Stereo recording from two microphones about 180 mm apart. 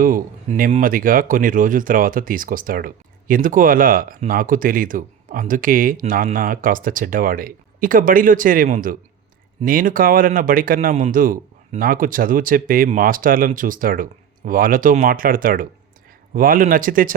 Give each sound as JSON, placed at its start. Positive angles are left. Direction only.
{"t": 0.0, "sound": "speech", "side_deg": -50}